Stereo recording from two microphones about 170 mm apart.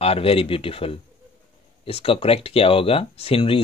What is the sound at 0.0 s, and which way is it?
Speech, 35° left (ahead or behind).